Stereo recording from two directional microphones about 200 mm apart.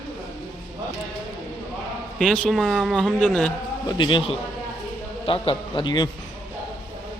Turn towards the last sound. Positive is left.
turn(degrees=20)  # may be behind; listen again after turning